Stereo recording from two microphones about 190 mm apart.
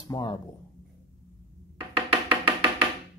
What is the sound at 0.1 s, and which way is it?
Speech, 25° left (ahead or behind).